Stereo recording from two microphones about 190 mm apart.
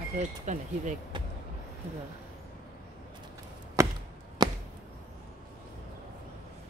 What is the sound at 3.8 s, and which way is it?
Chop, 15° right (ahead or behind).